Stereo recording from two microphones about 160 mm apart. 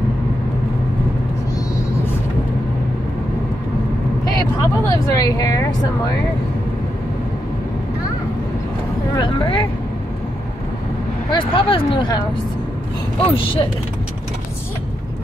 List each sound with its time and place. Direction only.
4.8 s speech: 20° left (ahead or behind)
9.1 s speech: 30° left (ahead or behind)
11.3 s speech: 30° left (ahead or behind)
13.2 s speech: 35° left (ahead or behind)